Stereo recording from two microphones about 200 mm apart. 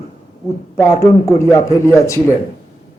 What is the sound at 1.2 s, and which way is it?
Speech, 15° left (ahead or behind).